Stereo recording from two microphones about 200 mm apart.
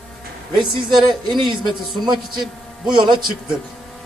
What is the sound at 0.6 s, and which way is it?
Speech, 20° right (ahead or behind).